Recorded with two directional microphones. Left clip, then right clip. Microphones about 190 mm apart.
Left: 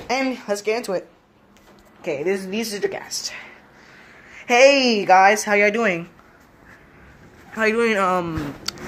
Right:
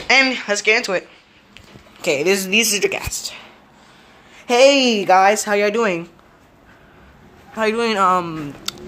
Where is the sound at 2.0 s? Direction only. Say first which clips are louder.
Right 6 dB; 40° right (ahead or behind).